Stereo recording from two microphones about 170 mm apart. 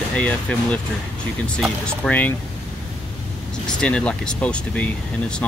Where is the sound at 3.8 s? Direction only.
5° left (ahead or behind).